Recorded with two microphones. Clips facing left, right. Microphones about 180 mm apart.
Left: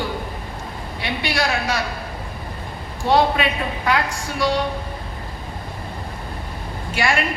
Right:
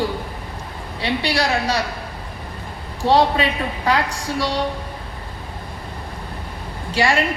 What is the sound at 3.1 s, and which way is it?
A woman's voice, 30° right (ahead or behind).